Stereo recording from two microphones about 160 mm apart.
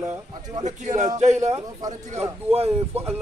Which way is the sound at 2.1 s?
40° right (ahead or behind).